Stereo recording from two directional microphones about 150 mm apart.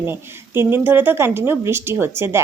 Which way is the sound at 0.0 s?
15° right (ahead or behind).